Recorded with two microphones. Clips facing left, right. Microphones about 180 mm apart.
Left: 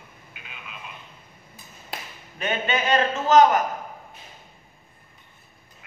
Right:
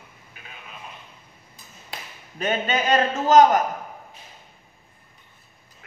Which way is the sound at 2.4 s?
40° right (ahead or behind).